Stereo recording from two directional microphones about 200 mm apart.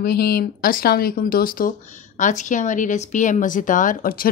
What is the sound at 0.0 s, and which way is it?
Speech, 50° left (ahead or behind).